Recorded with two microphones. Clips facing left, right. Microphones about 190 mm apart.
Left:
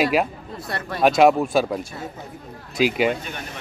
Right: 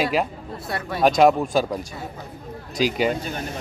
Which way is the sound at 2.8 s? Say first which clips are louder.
Left 1 dB; 35° right (ahead or behind).